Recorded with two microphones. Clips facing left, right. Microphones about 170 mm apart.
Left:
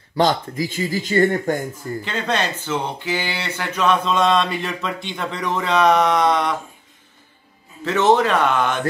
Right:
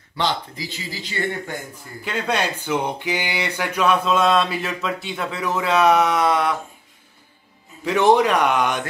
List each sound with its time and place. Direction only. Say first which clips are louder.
0.1 s speech: left 6 dB; 45° left (ahead or behind)
2.0 s speech: right 1 dB; 10° right (ahead or behind)
7.8 s speech: even; 15° right (ahead or behind)